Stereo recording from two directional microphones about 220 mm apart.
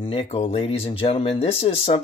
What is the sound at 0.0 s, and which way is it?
Speech, 25° left (ahead or behind).